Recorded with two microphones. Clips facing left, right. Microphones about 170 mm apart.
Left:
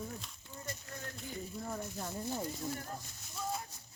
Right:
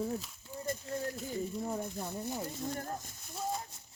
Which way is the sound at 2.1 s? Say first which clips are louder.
Right 1 dB; 15° right (ahead or behind).